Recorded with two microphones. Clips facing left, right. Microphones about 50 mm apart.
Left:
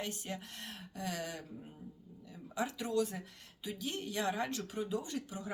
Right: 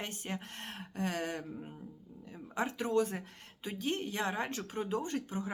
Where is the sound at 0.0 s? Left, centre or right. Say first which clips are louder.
Right 1 dB; right.